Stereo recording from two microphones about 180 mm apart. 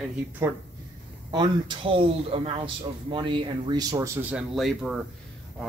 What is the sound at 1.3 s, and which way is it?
A man's voice, 25° right (ahead or behind).